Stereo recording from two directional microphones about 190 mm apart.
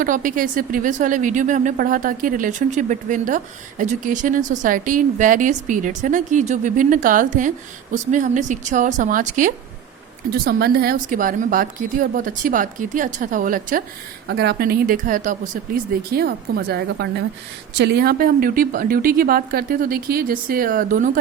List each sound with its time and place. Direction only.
0.0 s a woman's voice: 45° right (ahead or behind)
10.3 s a woman's voice: 55° right (ahead or behind)
14.3 s a woman's voice: 60° right (ahead or behind); by 21.2 s 45° right (ahead or behind)